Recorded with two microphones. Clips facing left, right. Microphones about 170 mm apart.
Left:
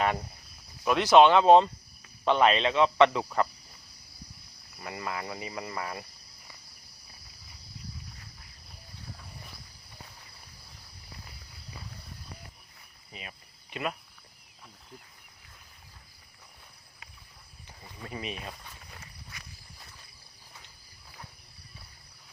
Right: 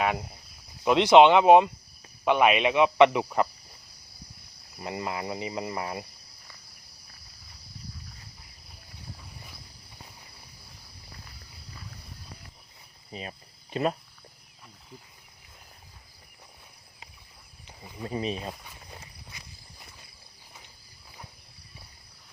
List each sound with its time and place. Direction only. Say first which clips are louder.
0.9 s speech: right 3 dB; 20° right (ahead or behind)
4.8 s speech: right 3 dB; 25° right (ahead or behind)
13.1 s cricket: right 7 dB; 35° right (ahead or behind)
17.7 s cricket: right 6 dB; 20° right (ahead or behind)
18.1 s speech: right 7 dB; 30° right (ahead or behind)
18.9 s walk: right 1 dB; 20° right (ahead or behind)